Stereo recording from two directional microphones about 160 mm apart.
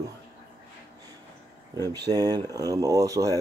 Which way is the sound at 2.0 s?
25° right (ahead or behind).